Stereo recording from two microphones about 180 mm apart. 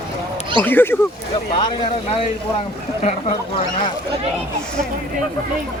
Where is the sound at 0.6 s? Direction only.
10° left (ahead or behind).